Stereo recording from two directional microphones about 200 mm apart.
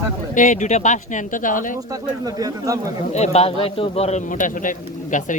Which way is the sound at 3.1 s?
35° left (ahead or behind).